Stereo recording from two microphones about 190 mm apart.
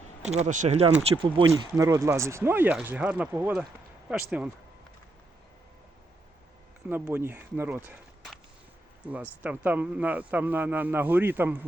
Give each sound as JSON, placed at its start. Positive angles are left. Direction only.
{"t": 0.3, "sound": "speech", "side_deg": -35}
{"t": 1.1, "sound": "speech", "side_deg": -25}
{"t": 6.8, "sound": "speech", "side_deg": -10}
{"t": 9.4, "sound": "speech", "side_deg": -10}